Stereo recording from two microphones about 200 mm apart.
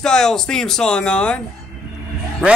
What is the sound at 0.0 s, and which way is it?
A child's voice, 5° left (ahead or behind).